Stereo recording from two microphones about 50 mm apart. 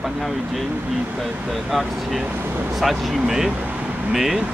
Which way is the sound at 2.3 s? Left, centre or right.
Right.